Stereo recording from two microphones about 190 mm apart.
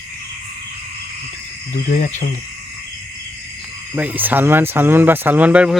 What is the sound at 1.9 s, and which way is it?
Speech, 40° left (ahead or behind).